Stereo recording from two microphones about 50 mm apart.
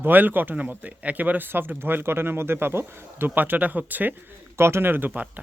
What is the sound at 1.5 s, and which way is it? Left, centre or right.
Speech, right.